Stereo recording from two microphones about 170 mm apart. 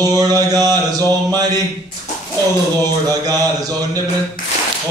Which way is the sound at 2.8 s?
20° right (ahead or behind).